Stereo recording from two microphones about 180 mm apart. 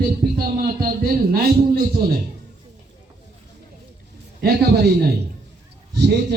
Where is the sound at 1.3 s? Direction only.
60° right (ahead or behind).